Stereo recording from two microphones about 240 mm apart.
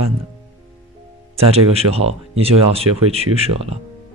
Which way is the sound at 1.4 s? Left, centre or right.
Right.